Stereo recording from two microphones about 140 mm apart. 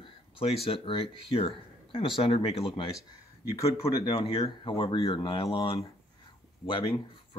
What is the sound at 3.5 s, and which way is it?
Speech, 30° left (ahead or behind).